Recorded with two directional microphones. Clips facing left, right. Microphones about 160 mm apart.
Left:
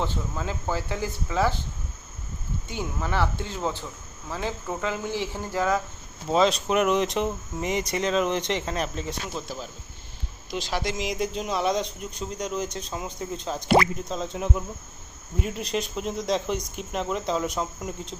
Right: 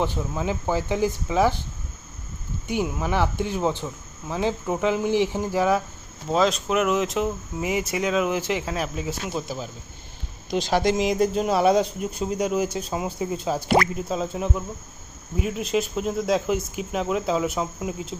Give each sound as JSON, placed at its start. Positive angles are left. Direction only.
{"t": 0.0, "sound": "speech", "side_deg": -15}
{"t": 2.6, "sound": "speech", "side_deg": -15}
{"t": 6.3, "sound": "speech", "side_deg": 0}
{"t": 10.5, "sound": "speech", "side_deg": -45}
{"t": 11.5, "sound": "speech", "side_deg": -5}